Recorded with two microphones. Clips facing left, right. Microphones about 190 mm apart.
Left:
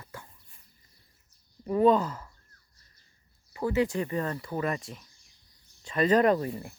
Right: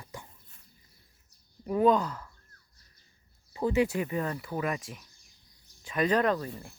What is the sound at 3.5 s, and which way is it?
Speech, 20° right (ahead or behind).